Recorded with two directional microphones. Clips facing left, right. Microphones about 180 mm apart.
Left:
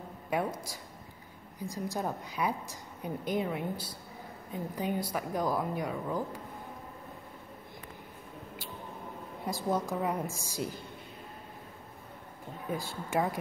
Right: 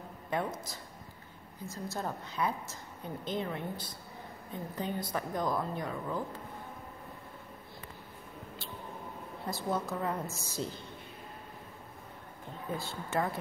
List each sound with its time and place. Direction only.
0.3 s a woman's voice: 10° left (ahead or behind)
9.5 s a woman's voice: 10° left (ahead or behind)
12.7 s a woman's voice: 10° left (ahead or behind)